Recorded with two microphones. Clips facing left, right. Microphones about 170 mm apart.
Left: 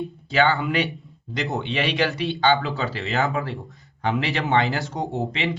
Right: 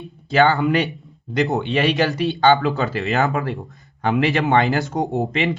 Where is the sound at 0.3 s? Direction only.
40° right (ahead or behind); by 3.4 s 60° right (ahead or behind).